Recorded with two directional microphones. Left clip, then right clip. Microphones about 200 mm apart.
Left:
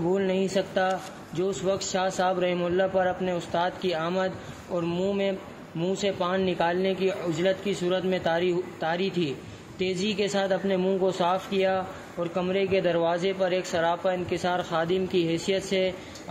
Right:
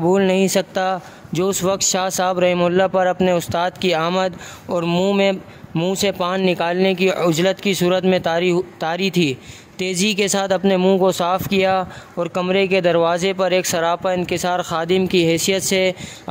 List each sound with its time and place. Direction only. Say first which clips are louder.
0.1 s speech: right 9 dB; 50° right (ahead or behind)